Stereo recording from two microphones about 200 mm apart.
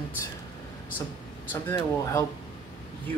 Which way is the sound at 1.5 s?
15° left (ahead or behind).